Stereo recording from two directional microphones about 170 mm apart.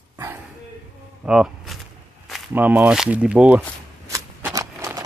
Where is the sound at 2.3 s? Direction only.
10° right (ahead or behind).